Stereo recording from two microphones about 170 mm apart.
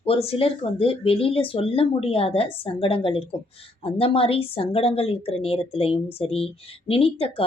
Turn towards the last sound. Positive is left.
turn(degrees=35)  # may be behind; listen again after turning